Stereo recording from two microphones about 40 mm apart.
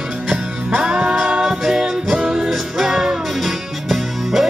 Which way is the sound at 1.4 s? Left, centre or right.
Centre.